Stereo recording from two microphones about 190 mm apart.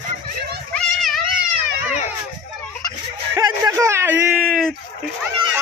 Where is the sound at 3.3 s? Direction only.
20° right (ahead or behind); by 4.7 s centre (ahead or behind).